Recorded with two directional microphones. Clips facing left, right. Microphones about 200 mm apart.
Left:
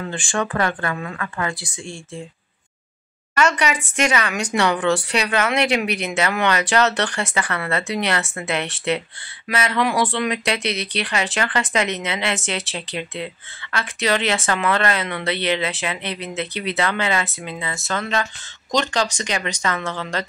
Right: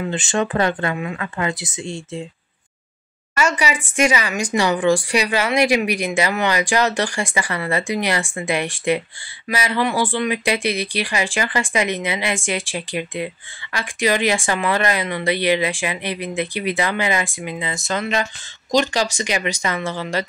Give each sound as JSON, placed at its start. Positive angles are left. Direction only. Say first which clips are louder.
{"t": 0.0, "sound": "speech", "louder": "right 3 dB", "side_deg": -20}
{"t": 3.3, "sound": "speech", "louder": "left 1 dB", "side_deg": -10}